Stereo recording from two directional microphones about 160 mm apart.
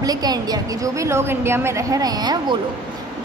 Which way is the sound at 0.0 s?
25° right (ahead or behind).